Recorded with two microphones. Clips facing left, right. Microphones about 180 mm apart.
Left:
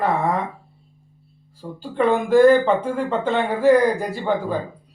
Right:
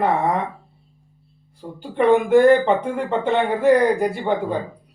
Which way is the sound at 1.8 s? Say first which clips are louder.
Right 3 dB; 15° right (ahead or behind).